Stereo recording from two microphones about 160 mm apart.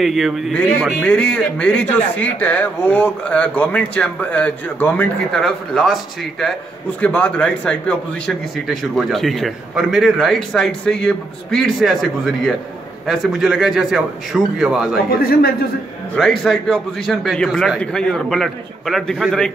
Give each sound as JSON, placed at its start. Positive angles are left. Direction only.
{"t": 0.0, "sound": "a man's voice", "side_deg": 0}
{"t": 5.4, "sound": "a man's voice", "side_deg": 0}
{"t": 7.0, "sound": "a man's voice", "side_deg": 10}
{"t": 15.0, "sound": "a man's voice", "side_deg": 70}
{"t": 16.2, "sound": "a man's voice", "side_deg": 0}